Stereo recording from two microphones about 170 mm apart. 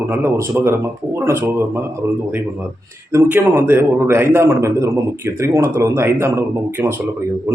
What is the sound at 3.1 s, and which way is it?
A man's voice, 15° right (ahead or behind).